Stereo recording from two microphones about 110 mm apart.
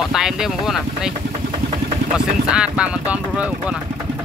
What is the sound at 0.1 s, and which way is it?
Speech, 5° right (ahead or behind).